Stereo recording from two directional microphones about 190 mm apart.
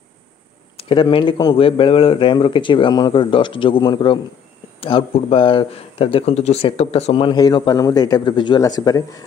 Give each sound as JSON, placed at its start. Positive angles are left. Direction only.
{"t": 0.7, "sound": "speech", "side_deg": 25}